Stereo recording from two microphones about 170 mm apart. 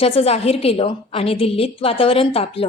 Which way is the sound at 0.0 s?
35° left (ahead or behind).